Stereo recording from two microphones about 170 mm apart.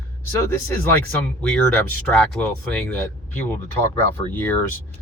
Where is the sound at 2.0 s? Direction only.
5° left (ahead or behind).